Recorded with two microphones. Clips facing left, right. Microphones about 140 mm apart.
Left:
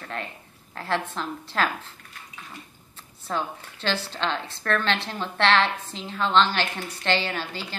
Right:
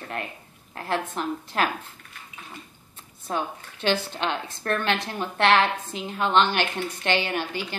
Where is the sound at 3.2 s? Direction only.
15° right (ahead or behind).